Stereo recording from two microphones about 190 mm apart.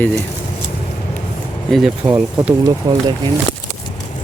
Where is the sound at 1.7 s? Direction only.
5° right (ahead or behind).